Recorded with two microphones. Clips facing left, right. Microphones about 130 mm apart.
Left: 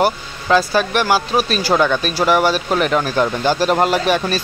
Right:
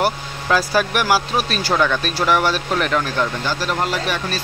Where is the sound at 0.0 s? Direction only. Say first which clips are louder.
Left 3 dB; 5° right (ahead or behind).